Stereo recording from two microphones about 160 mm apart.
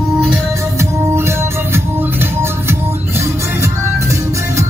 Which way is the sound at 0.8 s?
15° right (ahead or behind).